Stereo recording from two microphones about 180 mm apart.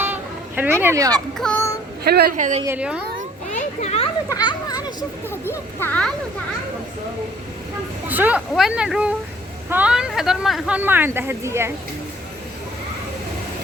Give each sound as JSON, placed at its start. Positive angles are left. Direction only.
{"t": 0.0, "sound": "music", "side_deg": -10}
{"t": 1.4, "sound": "child singing", "side_deg": 5}
{"t": 2.0, "sound": "a woman's voice", "side_deg": -60}
{"t": 2.3, "sound": "a woman's voice", "side_deg": -45}
{"t": 2.6, "sound": "speech", "side_deg": -10}
{"t": 3.5, "sound": "children playing", "side_deg": 40}
{"t": 4.3, "sound": "children playing", "side_deg": 20}
{"t": 5.8, "sound": "speech", "side_deg": 5}
{"t": 8.0, "sound": "speech", "side_deg": -10}